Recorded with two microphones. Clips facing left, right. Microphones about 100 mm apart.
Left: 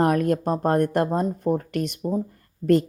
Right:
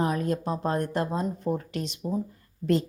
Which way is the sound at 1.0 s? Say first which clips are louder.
Left 5 dB; 45° left (ahead or behind).